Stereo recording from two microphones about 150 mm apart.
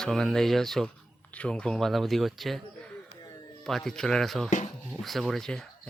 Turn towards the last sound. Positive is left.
turn(degrees=5)  # may be behind; listen again after turning